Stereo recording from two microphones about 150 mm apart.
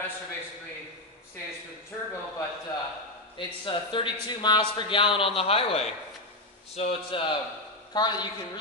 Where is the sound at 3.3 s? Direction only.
35° left (ahead or behind).